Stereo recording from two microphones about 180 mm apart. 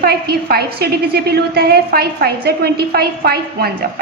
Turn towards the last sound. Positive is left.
turn(degrees=-60)  # may be behind; listen again after turning